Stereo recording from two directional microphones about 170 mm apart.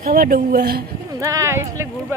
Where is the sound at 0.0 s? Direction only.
55° right (ahead or behind).